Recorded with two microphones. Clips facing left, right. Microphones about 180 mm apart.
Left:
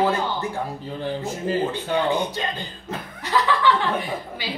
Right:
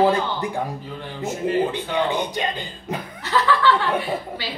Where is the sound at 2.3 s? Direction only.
15° right (ahead or behind).